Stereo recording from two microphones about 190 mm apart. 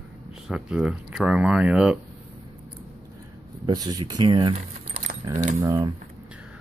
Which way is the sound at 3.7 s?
20° right (ahead or behind).